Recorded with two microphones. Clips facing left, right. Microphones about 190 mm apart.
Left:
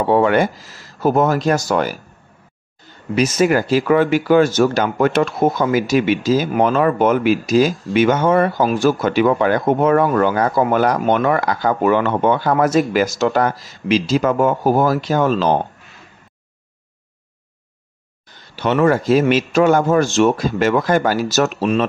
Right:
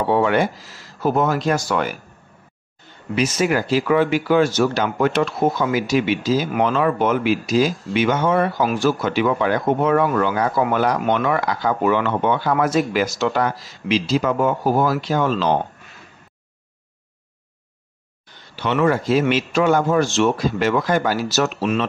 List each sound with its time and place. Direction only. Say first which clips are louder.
0.1 s speech: left 4 dB; 50° left (ahead or behind)
3.2 s speech: left 4 dB; 45° left (ahead or behind)
18.6 s speech: left 3 dB; 45° left (ahead or behind)